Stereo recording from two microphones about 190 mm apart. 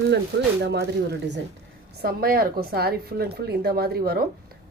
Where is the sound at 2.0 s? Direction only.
50° right (ahead or behind).